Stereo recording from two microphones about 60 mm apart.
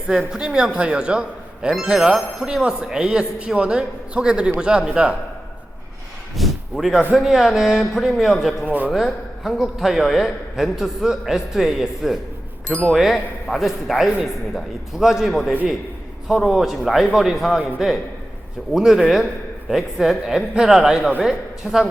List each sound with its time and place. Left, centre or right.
0.3 s speech: centre
6.3 s a sound: centre
7.2 s speech: centre
8.6 s speech: right
8.9 s a man's voice: centre